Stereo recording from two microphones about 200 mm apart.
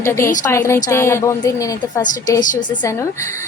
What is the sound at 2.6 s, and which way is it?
Speech, 20° left (ahead or behind).